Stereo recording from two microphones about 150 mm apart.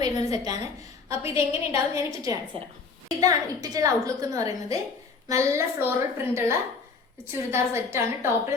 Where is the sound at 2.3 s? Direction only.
20° right (ahead or behind).